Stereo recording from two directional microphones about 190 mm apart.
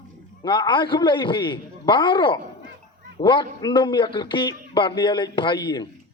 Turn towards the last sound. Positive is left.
turn(degrees=20)  # may be behind; listen again after turning